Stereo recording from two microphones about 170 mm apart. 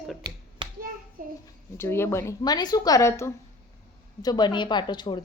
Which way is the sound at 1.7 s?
15° left (ahead or behind).